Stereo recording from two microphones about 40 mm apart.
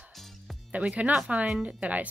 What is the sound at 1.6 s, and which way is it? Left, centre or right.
Speech, right.